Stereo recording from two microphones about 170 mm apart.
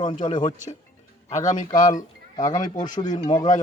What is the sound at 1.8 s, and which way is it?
Speech, 50° left (ahead or behind).